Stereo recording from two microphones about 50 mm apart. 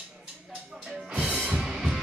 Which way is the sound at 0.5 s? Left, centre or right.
Centre.